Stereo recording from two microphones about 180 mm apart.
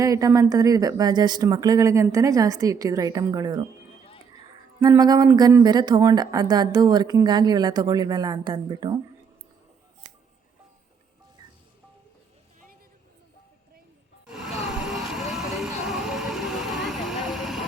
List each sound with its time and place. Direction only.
0.0 s speech: 20° right (ahead or behind)
4.8 s speech: 20° right (ahead or behind)
14.3 s music: 5° right (ahead or behind)
14.7 s vehicle: 5° right (ahead or behind)